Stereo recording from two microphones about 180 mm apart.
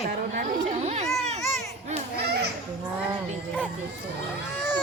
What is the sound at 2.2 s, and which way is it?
Children playing, 65° right (ahead or behind).